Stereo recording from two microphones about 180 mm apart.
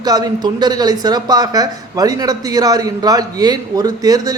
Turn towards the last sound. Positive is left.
turn(degrees=-20)  # may be behind; listen again after turning